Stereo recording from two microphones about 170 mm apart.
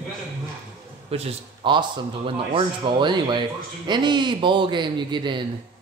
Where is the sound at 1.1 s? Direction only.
35° right (ahead or behind).